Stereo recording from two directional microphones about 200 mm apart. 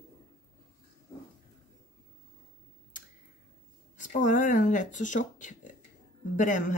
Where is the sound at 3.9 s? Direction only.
40° left (ahead or behind).